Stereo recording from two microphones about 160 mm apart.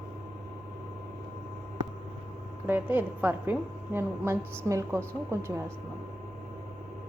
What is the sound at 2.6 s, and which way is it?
A woman's voice, 10° right (ahead or behind).